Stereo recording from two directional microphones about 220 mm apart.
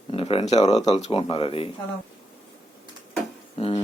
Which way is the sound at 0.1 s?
25° left (ahead or behind).